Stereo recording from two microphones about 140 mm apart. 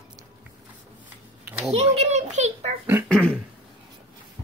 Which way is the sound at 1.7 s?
45° right (ahead or behind).